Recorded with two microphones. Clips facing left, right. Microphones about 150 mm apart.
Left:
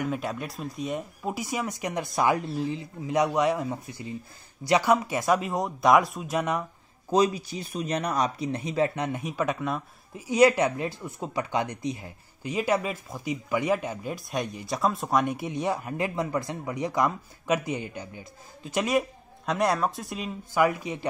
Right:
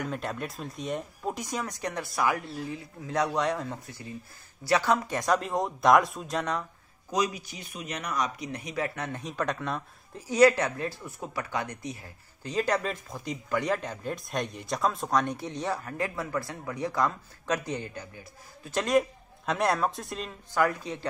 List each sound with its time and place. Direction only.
0.0 s speech: 5° left (ahead or behind)
7.1 s speech: 30° left (ahead or behind); by 10.2 s 5° left (ahead or behind)
10.3 s speech: 15° left (ahead or behind)